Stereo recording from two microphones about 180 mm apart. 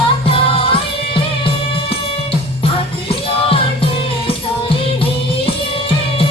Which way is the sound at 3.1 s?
30° left (ahead or behind).